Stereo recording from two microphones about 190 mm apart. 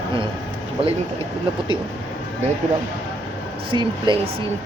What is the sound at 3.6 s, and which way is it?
Speech, 25° right (ahead or behind).